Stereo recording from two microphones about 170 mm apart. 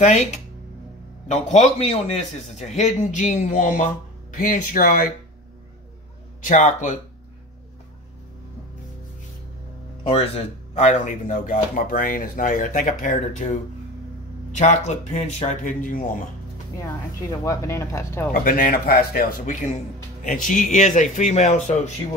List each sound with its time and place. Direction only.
0.0 s a man's voice: 40° left (ahead or behind)
6.4 s a man's voice: 45° left (ahead or behind)
10.0 s a man's voice: 35° left (ahead or behind)
16.8 s speech: 20° left (ahead or behind)
18.3 s a man's voice: 55° left (ahead or behind)